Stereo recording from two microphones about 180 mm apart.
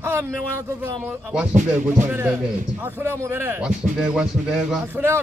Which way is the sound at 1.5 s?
40° right (ahead or behind).